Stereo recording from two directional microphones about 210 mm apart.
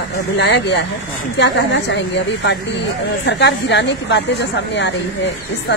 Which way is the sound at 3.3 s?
55° left (ahead or behind).